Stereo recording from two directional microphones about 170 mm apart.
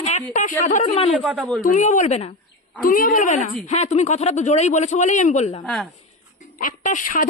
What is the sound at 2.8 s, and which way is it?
A man's voice, 55° left (ahead or behind).